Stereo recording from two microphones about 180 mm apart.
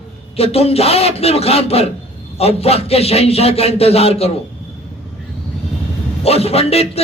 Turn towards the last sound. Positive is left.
turn(degrees=35)  # may be behind; listen again after turning